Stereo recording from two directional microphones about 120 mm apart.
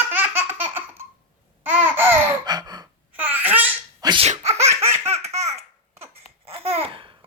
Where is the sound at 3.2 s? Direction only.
15° right (ahead or behind).